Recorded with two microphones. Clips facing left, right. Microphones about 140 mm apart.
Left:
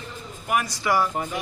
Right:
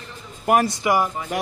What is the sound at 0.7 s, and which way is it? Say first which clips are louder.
Speech: right 3 dB; 15° right (ahead or behind).